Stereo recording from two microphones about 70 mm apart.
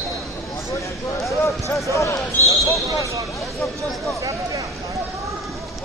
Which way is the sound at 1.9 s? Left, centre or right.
Left.